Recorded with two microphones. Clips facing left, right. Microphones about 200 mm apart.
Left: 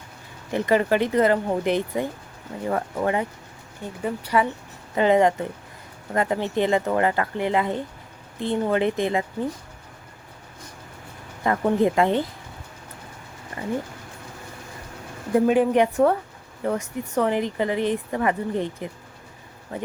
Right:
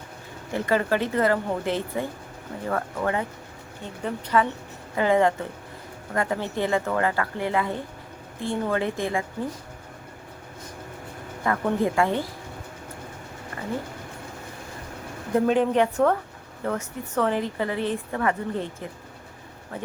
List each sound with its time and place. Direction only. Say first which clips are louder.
0.5 s a woman's voice: left 3 dB; 20° left (ahead or behind)
11.4 s a woman's voice: left 3 dB; 20° left (ahead or behind)
15.4 s a woman's voice: left 2 dB; 10° left (ahead or behind)